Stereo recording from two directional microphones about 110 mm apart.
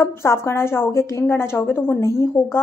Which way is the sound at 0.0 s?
25° left (ahead or behind).